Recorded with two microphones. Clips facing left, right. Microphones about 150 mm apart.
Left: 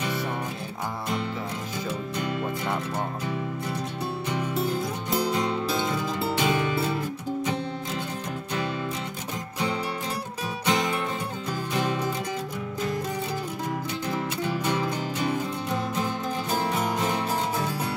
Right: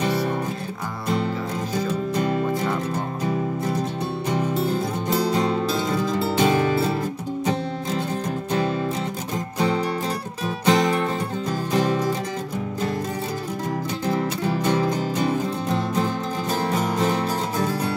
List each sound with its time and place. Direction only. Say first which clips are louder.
2.1 s music: right 7 dB; 40° right (ahead or behind)
5.1 s music: right 4 dB; 35° right (ahead or behind)
10.6 s music: right 7 dB; 35° right (ahead or behind)
14.0 s music: right 6 dB; 40° right (ahead or behind)